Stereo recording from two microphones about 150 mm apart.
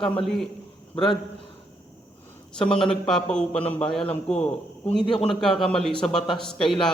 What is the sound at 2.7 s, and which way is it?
A man's voice, 5° left (ahead or behind).